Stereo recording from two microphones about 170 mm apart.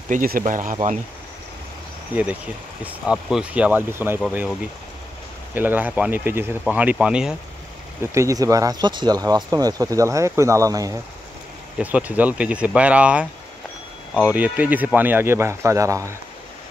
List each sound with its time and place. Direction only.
0.1 s speech: 50° right (ahead or behind)
2.1 s speech: 10° right (ahead or behind)
5.5 s speech: 10° right (ahead or behind)
8.1 s speech: 20° right (ahead or behind)
11.8 s speech: 10° right (ahead or behind)